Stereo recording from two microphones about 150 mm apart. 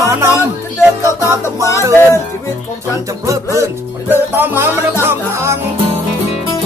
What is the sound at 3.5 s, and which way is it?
Speech, 15° right (ahead or behind).